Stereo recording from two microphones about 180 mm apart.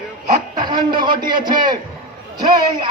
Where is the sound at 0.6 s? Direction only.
25° right (ahead or behind).